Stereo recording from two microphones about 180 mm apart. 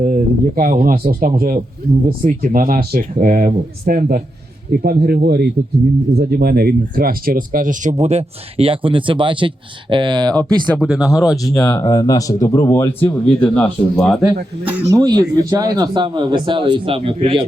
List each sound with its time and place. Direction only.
0.0 s speech: 50° right (ahead or behind); by 10.4 s 25° right (ahead or behind)
10.8 s speech: 5° right (ahead or behind)
11.4 s speech: 20° left (ahead or behind); by 14.3 s centre (ahead or behind)
14.8 s speech: 20° right (ahead or behind)